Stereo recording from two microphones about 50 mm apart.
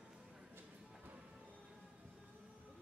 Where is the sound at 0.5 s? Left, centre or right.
Right.